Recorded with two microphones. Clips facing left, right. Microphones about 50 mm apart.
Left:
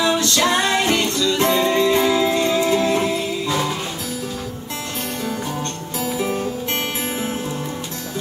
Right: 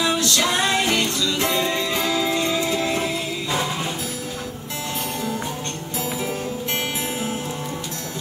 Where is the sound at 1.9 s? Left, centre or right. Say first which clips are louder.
Left 5 dB; left.